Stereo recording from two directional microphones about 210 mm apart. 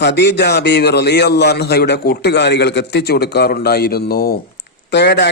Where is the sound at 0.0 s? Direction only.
55° left (ahead or behind).